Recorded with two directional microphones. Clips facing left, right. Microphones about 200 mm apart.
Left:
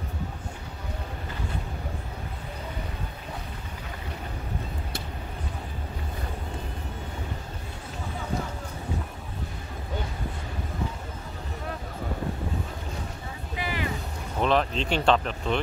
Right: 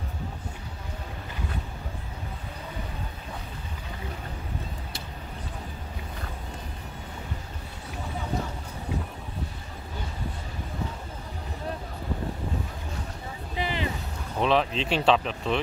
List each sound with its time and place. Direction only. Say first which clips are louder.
13.6 s vehicle: right 2 dB; 25° right (ahead or behind)
14.4 s speech: even; centre (ahead or behind)